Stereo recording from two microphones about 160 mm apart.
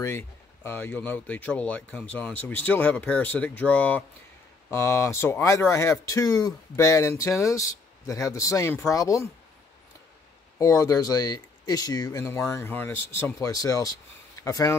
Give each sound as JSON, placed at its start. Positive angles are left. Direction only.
{"t": 0.7, "sound": "speech", "side_deg": 15}
{"t": 10.6, "sound": "speech", "side_deg": 20}